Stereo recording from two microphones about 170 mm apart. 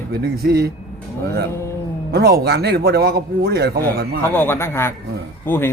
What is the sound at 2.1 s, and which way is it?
A man's voice, 65° right (ahead or behind).